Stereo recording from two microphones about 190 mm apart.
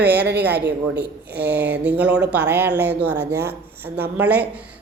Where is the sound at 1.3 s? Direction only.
10° right (ahead or behind).